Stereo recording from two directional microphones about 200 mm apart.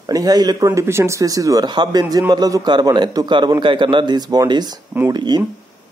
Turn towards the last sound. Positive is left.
turn(degrees=-20)  # may be behind; listen again after turning